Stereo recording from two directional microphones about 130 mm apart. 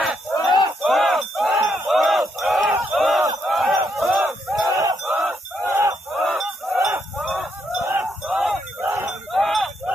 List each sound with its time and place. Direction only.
0.5 s battle cry: 35° left (ahead or behind)
0.8 s battle cry: centre (ahead or behind)
4.6 s battle cry: 25° right (ahead or behind)
5.0 s fowl: 10° right (ahead or behind)
6.1 s honk: centre (ahead or behind)
7.2 s fowl: centre (ahead or behind)
7.9 s battle cry: 5° right (ahead or behind)
8.8 s battle cry: 20° right (ahead or behind)
9.3 s chink: centre (ahead or behind)